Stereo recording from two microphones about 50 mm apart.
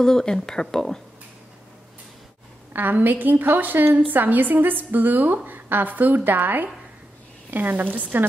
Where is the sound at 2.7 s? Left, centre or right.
Right.